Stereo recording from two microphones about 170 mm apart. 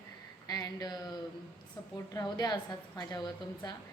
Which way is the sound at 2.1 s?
20° left (ahead or behind).